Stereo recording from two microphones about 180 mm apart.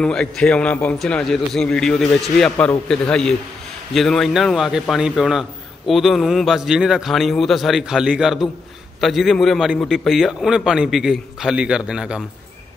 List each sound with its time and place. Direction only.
0.0 s a man's voice: 5° left (ahead or behind)